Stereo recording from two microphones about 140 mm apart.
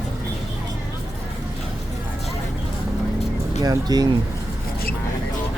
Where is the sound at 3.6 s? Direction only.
25° right (ahead or behind).